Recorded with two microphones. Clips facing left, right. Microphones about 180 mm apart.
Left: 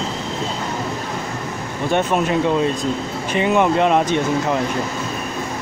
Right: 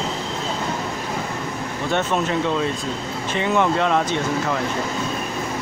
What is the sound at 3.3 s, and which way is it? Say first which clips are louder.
Speech: left 3 dB; 15° left (ahead or behind).